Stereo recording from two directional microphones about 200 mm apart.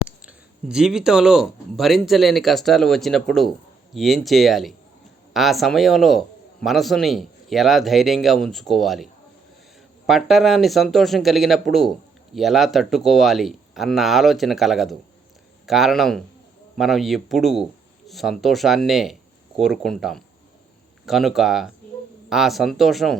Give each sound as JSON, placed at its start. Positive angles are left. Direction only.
{"t": 0.2, "sound": "speech", "side_deg": -5}
{"t": 10.1, "sound": "speech", "side_deg": 0}